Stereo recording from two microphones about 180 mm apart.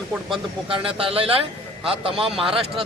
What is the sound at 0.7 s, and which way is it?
A man's voice, 30° right (ahead or behind).